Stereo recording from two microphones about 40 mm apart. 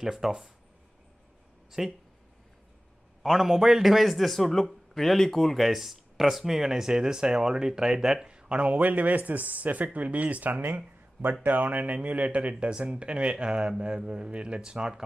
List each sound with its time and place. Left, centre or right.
0.0 s speech: centre
1.8 s speech: centre
3.2 s a man's voice: centre
8.3 s a sound: right
8.7 s speech: right; by 15.0 s centre